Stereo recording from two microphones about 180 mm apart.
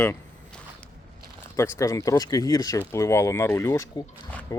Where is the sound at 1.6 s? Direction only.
15° left (ahead or behind).